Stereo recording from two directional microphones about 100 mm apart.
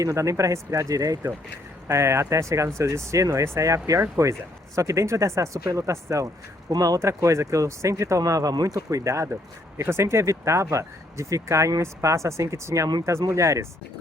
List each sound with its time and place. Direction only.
0.0 s speech: 30° right (ahead or behind)